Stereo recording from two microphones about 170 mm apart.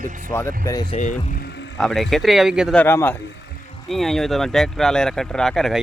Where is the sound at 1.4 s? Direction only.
85° left.